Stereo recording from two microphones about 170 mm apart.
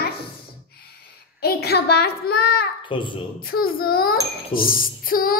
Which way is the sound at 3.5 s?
60° left (ahead or behind).